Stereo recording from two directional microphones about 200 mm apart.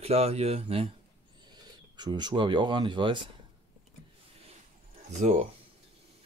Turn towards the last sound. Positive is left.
turn(degrees=-35)  # may be behind; listen again after turning